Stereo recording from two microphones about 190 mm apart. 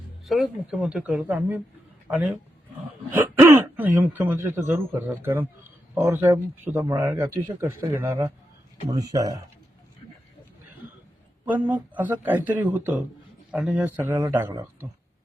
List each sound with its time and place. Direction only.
0.3 s speech: 5° right (ahead or behind); by 9.4 s 20° right (ahead or behind)
11.4 s speech: 10° right (ahead or behind)